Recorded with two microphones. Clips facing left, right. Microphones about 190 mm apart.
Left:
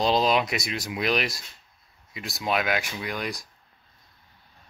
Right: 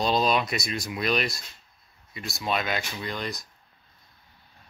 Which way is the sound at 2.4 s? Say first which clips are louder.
Left 2 dB; 10° left (ahead or behind).